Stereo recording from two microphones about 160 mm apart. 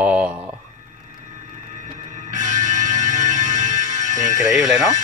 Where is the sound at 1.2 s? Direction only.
50° right (ahead or behind).